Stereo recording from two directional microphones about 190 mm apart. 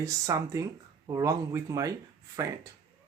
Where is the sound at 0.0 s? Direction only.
15° right (ahead or behind).